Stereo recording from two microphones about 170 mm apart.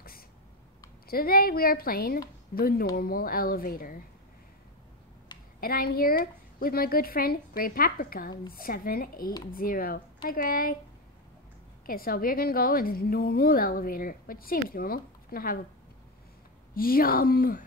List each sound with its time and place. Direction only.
1.0 s a woman's voice: 60° left (ahead or behind)
5.6 s a woman's voice: 60° left (ahead or behind)
11.8 s a woman's voice: 60° left (ahead or behind)
16.7 s a woman's voice: 60° left (ahead or behind)